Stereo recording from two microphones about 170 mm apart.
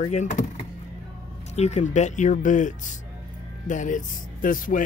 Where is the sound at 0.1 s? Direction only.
45° left (ahead or behind).